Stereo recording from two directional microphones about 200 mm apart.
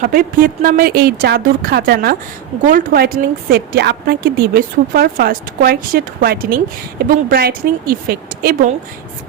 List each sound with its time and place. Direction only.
0.0 s a woman's voice: 45° right (ahead or behind)